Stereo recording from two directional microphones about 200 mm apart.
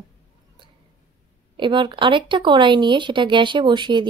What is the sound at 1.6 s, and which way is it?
Speech, 25° right (ahead or behind).